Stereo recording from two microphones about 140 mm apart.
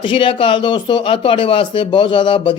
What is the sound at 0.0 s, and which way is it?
Speech, 35° left (ahead or behind).